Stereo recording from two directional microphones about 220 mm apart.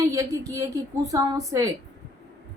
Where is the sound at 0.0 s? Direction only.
15° right (ahead or behind).